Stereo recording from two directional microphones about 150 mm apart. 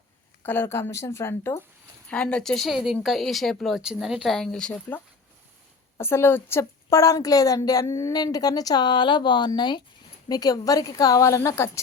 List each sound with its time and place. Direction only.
0.4 s speech: 15° left (ahead or behind)
2.0 s a woman's voice: 5° left (ahead or behind)
6.0 s a woman's voice: 15° left (ahead or behind)